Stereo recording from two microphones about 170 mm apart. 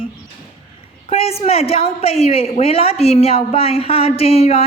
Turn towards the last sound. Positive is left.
turn(degrees=35)  # may be behind; listen again after turning